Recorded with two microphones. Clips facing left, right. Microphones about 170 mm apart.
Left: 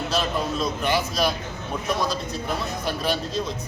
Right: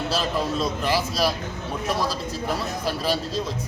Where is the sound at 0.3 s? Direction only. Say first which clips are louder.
Right 1 dB; centre (ahead or behind).